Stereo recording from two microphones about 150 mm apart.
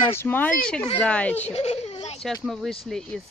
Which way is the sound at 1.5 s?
45° left (ahead or behind).